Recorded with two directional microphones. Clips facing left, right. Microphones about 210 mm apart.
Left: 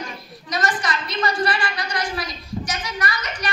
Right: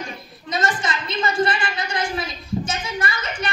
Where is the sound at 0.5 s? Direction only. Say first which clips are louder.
Even; 25° right (ahead or behind).